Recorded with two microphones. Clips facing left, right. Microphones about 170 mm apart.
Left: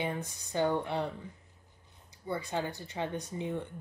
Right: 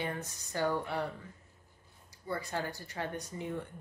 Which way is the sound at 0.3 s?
20° left (ahead or behind).